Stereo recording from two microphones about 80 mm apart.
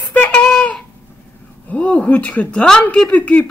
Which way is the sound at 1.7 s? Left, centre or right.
Centre.